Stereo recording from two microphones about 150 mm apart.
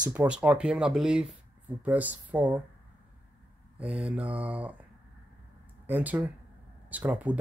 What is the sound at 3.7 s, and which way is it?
Speech, 10° right (ahead or behind).